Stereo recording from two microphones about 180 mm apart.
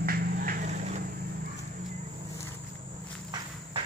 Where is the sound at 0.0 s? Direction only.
55° right (ahead or behind); by 1.1 s 40° right (ahead or behind).